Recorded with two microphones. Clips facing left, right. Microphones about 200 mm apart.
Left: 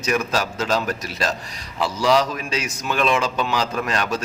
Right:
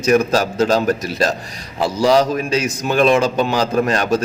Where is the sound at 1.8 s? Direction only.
40° right (ahead or behind).